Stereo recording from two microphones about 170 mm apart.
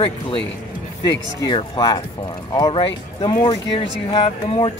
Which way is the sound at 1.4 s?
25° left (ahead or behind).